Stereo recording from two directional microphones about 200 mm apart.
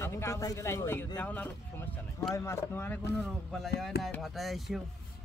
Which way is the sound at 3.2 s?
Centre (ahead or behind).